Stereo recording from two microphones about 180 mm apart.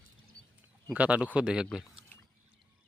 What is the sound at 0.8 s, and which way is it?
Speech, 10° right (ahead or behind).